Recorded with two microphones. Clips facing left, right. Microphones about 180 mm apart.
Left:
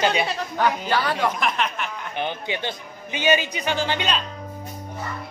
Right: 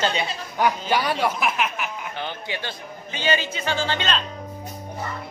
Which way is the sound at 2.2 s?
20° left (ahead or behind).